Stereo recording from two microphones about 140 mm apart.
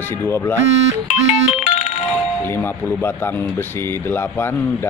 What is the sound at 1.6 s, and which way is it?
Music, 50° left (ahead or behind).